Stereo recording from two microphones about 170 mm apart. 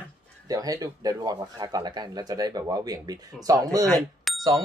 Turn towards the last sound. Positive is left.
turn(degrees=0)  # may be behind; listen again after turning